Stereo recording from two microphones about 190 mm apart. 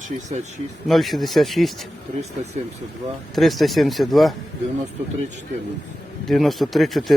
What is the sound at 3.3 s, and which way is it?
Speech, centre (ahead or behind).